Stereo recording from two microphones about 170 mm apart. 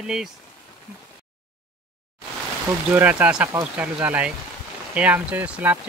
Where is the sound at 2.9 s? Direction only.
10° right (ahead or behind).